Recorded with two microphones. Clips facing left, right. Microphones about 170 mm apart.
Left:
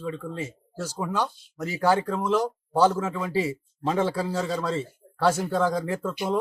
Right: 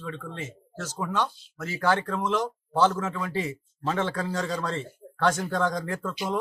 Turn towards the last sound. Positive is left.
turn(degrees=5)  # may be behind; listen again after turning